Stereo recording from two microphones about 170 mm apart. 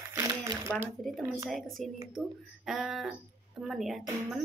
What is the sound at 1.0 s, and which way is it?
Speech, centre (ahead or behind).